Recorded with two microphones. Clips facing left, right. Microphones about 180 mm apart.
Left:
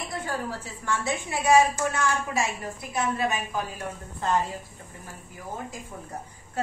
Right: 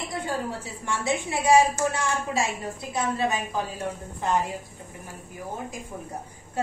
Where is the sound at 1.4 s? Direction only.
30° right (ahead or behind).